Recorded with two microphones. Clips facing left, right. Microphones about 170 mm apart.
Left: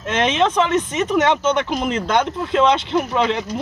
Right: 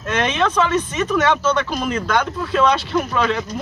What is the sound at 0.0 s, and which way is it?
Speech, 20° left (ahead or behind).